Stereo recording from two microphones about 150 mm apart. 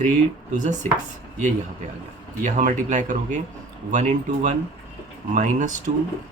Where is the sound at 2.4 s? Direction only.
55° right (ahead or behind).